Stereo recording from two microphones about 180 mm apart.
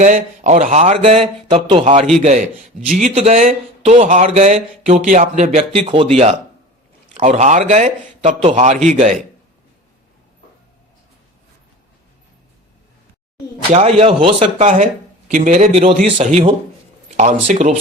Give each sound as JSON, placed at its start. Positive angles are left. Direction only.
{"t": 0.0, "sound": "speech", "side_deg": -40}
{"t": 13.7, "sound": "speech", "side_deg": -30}